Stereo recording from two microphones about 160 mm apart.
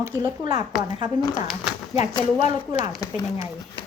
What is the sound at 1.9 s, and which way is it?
Speech, 45° left (ahead or behind).